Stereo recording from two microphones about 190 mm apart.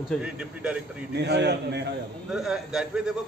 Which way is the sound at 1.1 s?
60° right (ahead or behind).